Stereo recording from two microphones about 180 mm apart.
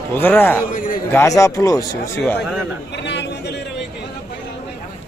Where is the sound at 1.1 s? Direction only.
15° left (ahead or behind).